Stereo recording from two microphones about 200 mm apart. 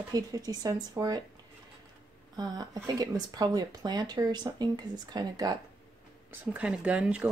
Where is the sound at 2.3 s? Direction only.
20° right (ahead or behind).